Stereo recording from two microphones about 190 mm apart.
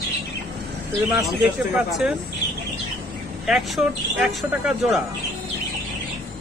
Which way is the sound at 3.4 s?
Centre (ahead or behind).